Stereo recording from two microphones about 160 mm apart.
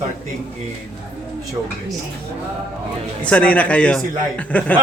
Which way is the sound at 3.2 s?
10° left (ahead or behind).